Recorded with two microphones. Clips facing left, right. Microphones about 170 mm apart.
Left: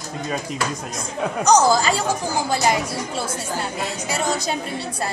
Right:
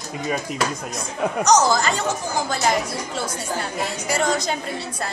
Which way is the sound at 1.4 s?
30° left (ahead or behind).